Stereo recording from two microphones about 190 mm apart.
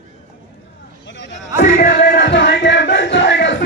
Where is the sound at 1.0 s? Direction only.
75° left (ahead or behind).